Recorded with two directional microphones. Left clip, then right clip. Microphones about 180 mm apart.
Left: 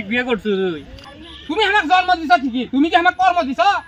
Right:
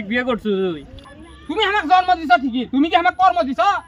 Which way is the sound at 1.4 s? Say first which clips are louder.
Left 2 dB; 10° right (ahead or behind).